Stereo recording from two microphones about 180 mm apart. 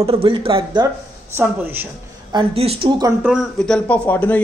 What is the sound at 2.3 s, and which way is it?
Speech, 35° right (ahead or behind).